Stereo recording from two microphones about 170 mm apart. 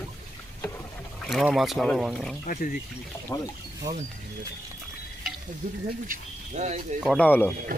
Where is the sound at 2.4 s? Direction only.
50° left (ahead or behind).